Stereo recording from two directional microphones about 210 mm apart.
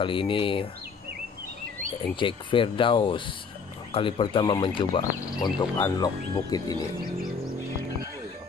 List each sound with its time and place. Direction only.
0.0 s speech: 25° left (ahead or behind)
2.1 s speech: 25° left (ahead or behind)